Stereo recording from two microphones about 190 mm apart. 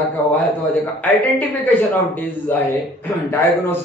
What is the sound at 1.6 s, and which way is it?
A man's voice, 10° left (ahead or behind).